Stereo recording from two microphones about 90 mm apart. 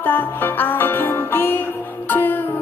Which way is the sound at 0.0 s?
20° left (ahead or behind).